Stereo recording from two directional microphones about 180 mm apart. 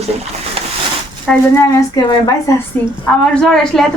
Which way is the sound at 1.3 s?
Centre (ahead or behind).